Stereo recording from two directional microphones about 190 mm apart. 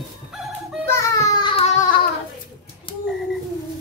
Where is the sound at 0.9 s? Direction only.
20° left (ahead or behind).